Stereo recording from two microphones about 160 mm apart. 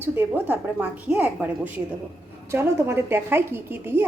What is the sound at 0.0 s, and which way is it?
A woman's voice, 10° right (ahead or behind).